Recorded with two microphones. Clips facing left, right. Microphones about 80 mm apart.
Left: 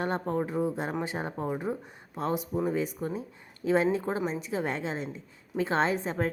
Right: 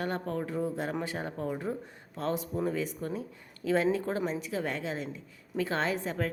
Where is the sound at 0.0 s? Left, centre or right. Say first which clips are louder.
Left 3 dB; left.